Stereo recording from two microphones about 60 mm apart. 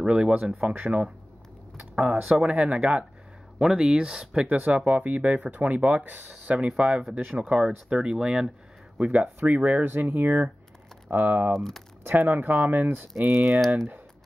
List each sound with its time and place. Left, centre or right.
0.0 s speech: centre
9.0 s speech: right
11.5 s speech: centre
12.1 s speech: right
13.3 s speech: centre
13.7 s speech: right